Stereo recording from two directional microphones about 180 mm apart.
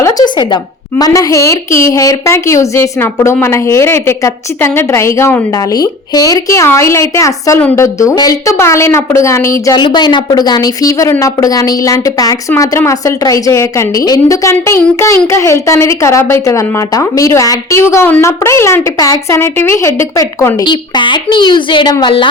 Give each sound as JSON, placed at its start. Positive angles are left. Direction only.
{"t": 0.0, "sound": "a woman's voice", "side_deg": 20}
{"t": 20.7, "sound": "a woman's voice", "side_deg": 25}